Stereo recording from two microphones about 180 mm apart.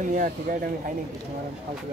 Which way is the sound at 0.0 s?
50° right (ahead or behind).